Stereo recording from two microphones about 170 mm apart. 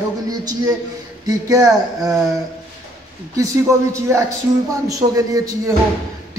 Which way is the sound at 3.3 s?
20° right (ahead or behind).